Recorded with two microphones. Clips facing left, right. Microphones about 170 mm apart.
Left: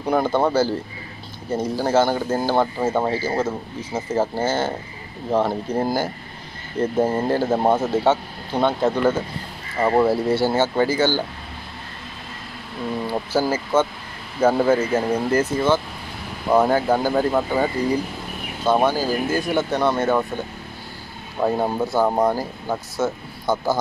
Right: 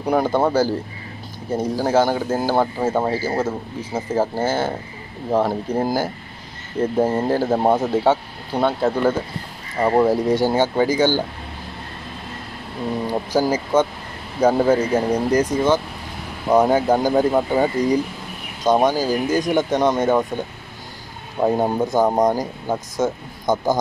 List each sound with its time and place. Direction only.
0.0 s speech: 10° right (ahead or behind)
13.0 s speech: 15° right (ahead or behind)
21.4 s speech: 20° right (ahead or behind)